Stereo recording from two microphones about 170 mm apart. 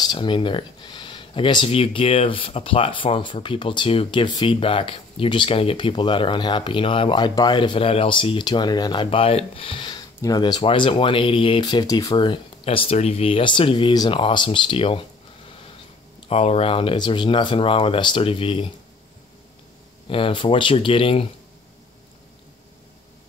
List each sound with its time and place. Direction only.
0.0 s speech: 25° left (ahead or behind)
16.2 s speech: 35° left (ahead or behind)
20.1 s speech: 30° left (ahead or behind)